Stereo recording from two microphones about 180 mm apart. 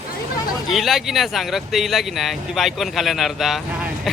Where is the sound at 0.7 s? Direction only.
Centre (ahead or behind).